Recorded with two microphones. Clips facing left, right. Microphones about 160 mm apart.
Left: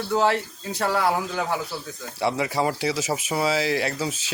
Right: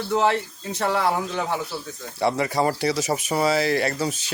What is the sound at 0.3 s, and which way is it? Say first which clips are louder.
Speech: right 1 dB; 20° right (ahead or behind).